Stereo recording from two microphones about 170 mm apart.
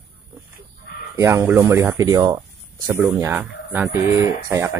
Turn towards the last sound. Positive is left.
turn(degrees=-15)  # may be behind; listen again after turning